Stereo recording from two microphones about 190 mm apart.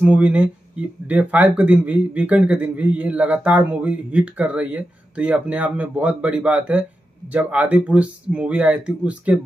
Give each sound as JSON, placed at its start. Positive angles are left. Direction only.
{"t": 0.0, "sound": "speech", "side_deg": -5}